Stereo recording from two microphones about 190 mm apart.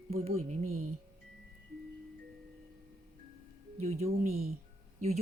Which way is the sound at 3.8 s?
35° right (ahead or behind).